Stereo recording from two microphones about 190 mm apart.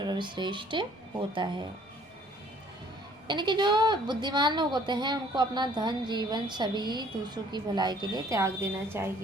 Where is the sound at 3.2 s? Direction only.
25° right (ahead or behind).